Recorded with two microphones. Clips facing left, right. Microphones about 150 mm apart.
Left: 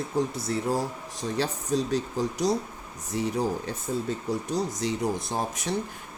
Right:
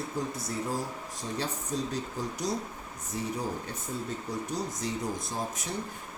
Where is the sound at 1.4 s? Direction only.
90° left.